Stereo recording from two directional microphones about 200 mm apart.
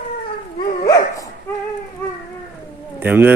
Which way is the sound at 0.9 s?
15° left (ahead or behind).